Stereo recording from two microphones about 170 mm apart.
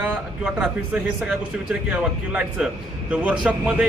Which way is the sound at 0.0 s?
5° right (ahead or behind).